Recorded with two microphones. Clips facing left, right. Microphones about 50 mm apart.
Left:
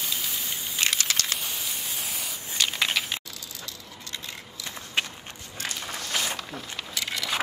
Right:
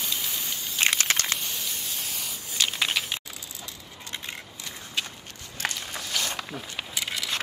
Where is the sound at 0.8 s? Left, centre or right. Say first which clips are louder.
Right 3 dB; right.